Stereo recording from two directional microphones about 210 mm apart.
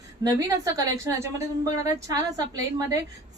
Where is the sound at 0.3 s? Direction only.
15° right (ahead or behind).